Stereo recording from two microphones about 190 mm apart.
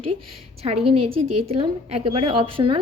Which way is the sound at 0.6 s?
30° right (ahead or behind).